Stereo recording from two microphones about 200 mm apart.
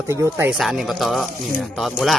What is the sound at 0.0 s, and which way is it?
Speech, 15° right (ahead or behind).